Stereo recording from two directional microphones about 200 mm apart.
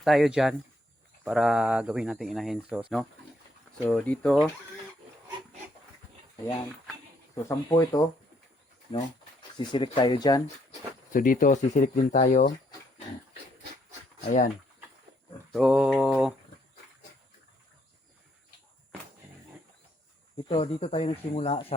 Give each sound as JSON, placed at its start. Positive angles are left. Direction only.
{"t": 0.0, "sound": "speech", "side_deg": 0}
{"t": 7.4, "sound": "speech", "side_deg": 15}
{"t": 9.6, "sound": "speech", "side_deg": 25}
{"t": 11.1, "sound": "speech", "side_deg": 40}
{"t": 14.3, "sound": "speech", "side_deg": 45}
{"t": 15.5, "sound": "speech", "side_deg": 0}
{"t": 20.5, "sound": "speech", "side_deg": 25}